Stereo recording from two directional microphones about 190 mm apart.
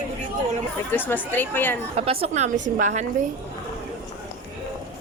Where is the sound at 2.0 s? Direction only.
30° right (ahead or behind).